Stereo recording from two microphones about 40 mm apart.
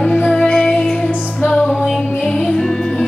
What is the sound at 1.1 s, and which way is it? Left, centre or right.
Music, left.